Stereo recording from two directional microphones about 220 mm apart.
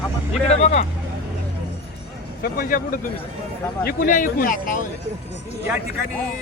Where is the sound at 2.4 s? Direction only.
40° left (ahead or behind).